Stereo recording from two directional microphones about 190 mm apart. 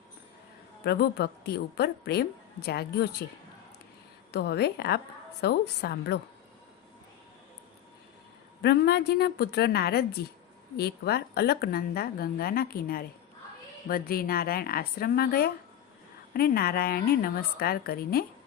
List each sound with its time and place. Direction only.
0.9 s a woman's voice: 55° left (ahead or behind)
4.3 s a woman's voice: 60° left (ahead or behind)
8.6 s a woman's voice: 60° left (ahead or behind)